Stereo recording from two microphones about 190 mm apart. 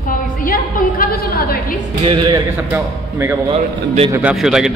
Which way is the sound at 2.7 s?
10° right (ahead or behind).